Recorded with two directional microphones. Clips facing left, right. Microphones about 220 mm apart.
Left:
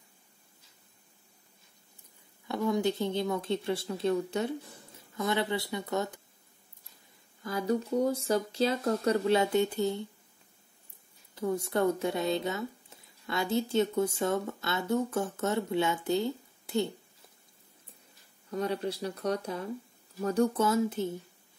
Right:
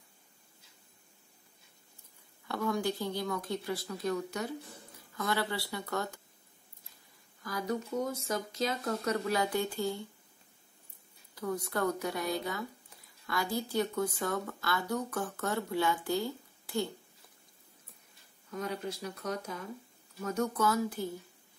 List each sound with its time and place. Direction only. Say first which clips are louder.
2.4 s speech: left 4 dB; 20° left (ahead or behind)
7.4 s speech: left 5 dB; 30° left (ahead or behind)
11.3 s speech: left 5 dB; 25° left (ahead or behind)
18.5 s speech: left 5 dB; 35° left (ahead or behind)